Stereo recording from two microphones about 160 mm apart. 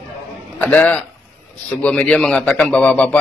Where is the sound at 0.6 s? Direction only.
10° left (ahead or behind).